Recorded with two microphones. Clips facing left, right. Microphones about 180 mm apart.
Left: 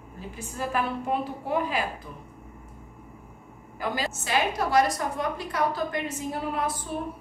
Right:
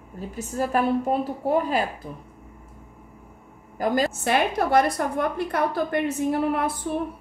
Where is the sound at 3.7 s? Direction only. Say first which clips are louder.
Right 7 dB; 45° right (ahead or behind).